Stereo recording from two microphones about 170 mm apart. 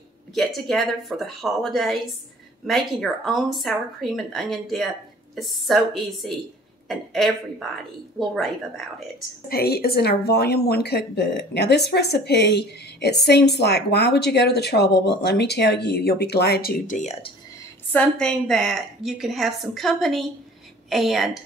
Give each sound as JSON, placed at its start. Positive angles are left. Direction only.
{"t": 0.3, "sound": "speech", "side_deg": 0}
{"t": 9.5, "sound": "a woman's voice", "side_deg": 65}
{"t": 16.8, "sound": "speech", "side_deg": 45}
{"t": 17.9, "sound": "speech", "side_deg": 5}